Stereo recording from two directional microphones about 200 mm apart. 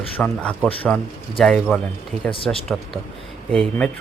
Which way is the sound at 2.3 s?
25° left (ahead or behind).